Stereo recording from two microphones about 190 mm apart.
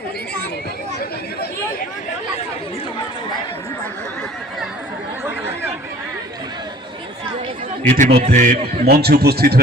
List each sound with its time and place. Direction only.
7.9 s a man's voice: 40° right (ahead or behind)